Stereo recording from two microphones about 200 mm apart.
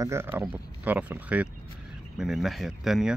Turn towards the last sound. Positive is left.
turn(degrees=0)  # may be behind; listen again after turning